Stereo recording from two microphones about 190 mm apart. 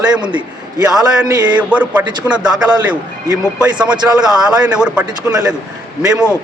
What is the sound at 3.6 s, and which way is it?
A man's voice, 5° right (ahead or behind).